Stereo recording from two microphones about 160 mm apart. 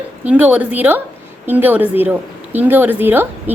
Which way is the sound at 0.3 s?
10° right (ahead or behind).